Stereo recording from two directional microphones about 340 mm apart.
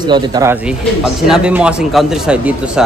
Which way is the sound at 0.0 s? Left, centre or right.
Centre.